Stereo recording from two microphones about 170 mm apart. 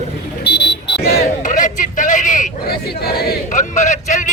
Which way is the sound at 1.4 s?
50° left (ahead or behind).